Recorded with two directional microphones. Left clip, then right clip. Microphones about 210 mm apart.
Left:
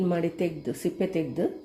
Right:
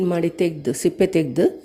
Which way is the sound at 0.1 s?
25° right (ahead or behind).